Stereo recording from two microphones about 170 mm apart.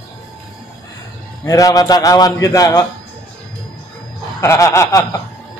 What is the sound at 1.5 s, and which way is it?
A man's voice, 20° left (ahead or behind).